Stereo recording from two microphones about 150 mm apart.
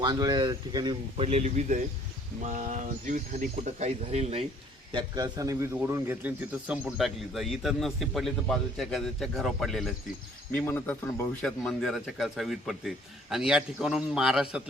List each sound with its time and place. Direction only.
0.0 s speech: 25° right (ahead or behind)
1.1 s speech: 45° right (ahead or behind)
4.9 s speech: 30° right (ahead or behind); by 14.6 s 5° right (ahead or behind)